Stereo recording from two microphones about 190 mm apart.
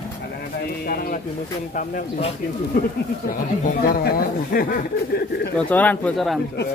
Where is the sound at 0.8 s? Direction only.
50° left (ahead or behind).